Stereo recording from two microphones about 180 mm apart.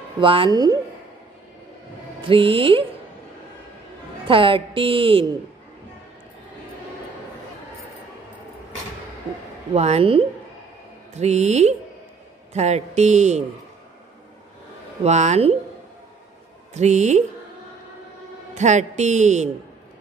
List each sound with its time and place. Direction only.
0.2 s speech: 30° right (ahead or behind)
2.2 s speech: 30° right (ahead or behind)
4.3 s speech: 30° right (ahead or behind)
9.8 s a woman's voice: 35° right (ahead or behind)
15.0 s a woman's voice: 40° right (ahead or behind)
16.7 s a woman's voice: 40° right (ahead or behind)
18.5 s a woman's voice: 40° right (ahead or behind)